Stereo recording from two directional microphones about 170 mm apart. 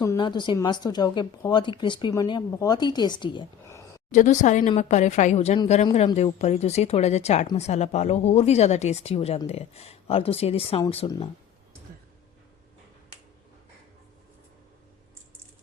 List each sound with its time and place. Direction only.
0.0 s a woman's voice: 20° left (ahead or behind)
3.7 s a sound: 20° left (ahead or behind)
4.1 s a woman's voice: 45° left (ahead or behind)